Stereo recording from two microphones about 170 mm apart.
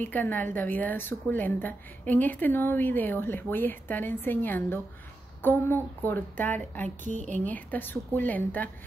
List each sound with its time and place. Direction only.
0.0 s a woman's voice: 10° left (ahead or behind)
7.1 s a woman's voice: 45° right (ahead or behind)
7.4 s a woman's voice: 10° left (ahead or behind)